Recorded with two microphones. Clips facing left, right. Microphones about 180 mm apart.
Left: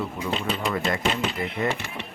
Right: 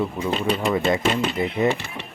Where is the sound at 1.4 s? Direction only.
20° right (ahead or behind).